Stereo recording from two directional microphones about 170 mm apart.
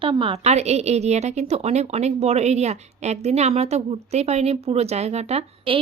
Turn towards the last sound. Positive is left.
turn(degrees=-35)  # may be behind; listen again after turning